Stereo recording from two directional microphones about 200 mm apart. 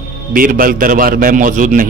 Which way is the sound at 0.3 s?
45° right (ahead or behind).